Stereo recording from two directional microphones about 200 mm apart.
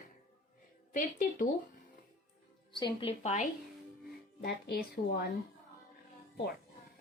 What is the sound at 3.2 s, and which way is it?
Speech, 35° left (ahead or behind).